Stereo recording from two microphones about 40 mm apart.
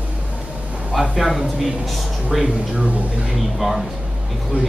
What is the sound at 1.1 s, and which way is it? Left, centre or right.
Speech, centre.